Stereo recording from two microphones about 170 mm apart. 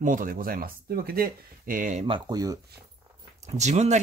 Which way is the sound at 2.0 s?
25° right (ahead or behind).